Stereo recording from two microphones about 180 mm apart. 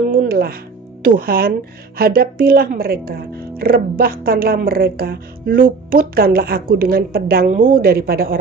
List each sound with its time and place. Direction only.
0.1 s music: 55° right (ahead or behind)
1.0 s speech: 55° right (ahead or behind)